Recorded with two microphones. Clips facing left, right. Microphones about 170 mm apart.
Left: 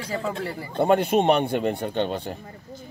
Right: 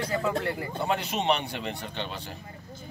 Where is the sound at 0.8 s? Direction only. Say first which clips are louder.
Left 11 dB; 55° left (ahead or behind).